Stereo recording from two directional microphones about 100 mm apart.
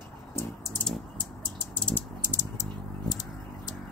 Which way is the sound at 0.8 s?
15° left (ahead or behind).